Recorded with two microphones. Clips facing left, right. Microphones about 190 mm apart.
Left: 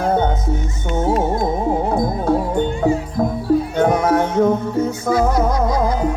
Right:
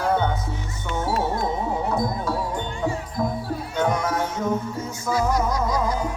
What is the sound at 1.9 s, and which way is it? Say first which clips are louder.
Music: left 7 dB; 55° left (ahead or behind).